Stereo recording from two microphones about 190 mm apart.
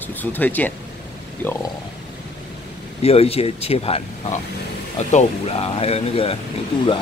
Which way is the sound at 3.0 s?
30° left (ahead or behind).